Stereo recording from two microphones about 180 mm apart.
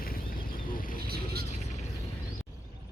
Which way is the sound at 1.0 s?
60° right (ahead or behind).